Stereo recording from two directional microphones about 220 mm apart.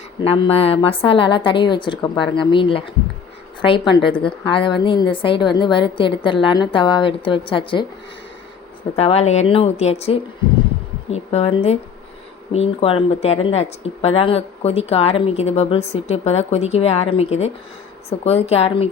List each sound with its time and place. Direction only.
0.2 s speech: 25° left (ahead or behind)
9.0 s speech: 30° left (ahead or behind)